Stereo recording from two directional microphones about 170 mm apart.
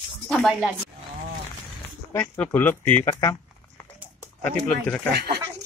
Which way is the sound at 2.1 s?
15° left (ahead or behind).